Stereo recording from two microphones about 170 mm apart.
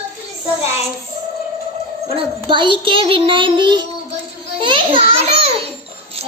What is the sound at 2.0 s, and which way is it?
Child singing, 30° right (ahead or behind).